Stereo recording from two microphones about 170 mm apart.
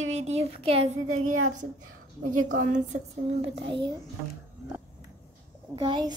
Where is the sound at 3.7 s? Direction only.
30° right (ahead or behind).